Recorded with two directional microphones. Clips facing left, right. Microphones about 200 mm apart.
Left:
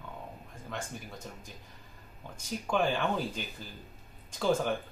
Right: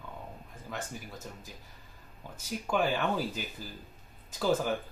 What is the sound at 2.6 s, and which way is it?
Speech, 5° right (ahead or behind).